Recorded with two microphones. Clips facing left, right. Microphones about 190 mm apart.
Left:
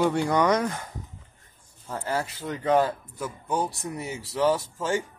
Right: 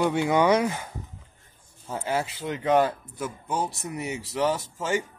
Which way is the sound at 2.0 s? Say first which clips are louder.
Right 1 dB; 20° right (ahead or behind).